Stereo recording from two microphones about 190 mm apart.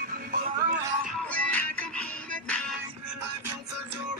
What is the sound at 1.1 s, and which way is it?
Music, 5° left (ahead or behind).